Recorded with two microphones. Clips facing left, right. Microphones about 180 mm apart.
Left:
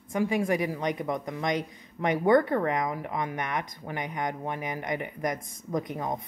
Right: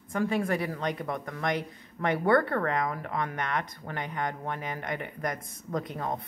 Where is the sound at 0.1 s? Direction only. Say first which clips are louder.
Left 2 dB; 10° left (ahead or behind).